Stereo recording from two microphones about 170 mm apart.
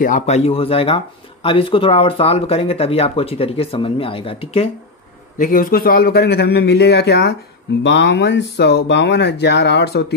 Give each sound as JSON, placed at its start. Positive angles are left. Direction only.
{"t": 0.0, "sound": "speech", "side_deg": 50}
{"t": 0.4, "sound": "speech", "side_deg": 35}
{"t": 5.4, "sound": "a man's voice", "side_deg": 55}
{"t": 7.8, "sound": "speech", "side_deg": 90}